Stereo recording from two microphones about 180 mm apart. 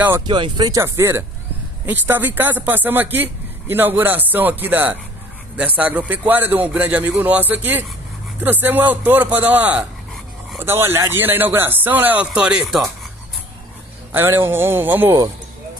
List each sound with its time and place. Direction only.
0.3 s speech: 25° right (ahead or behind); by 12.8 s 5° right (ahead or behind)
14.1 s speech: 15° right (ahead or behind)